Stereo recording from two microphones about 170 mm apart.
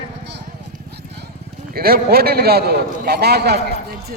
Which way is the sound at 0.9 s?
75° right (ahead or behind).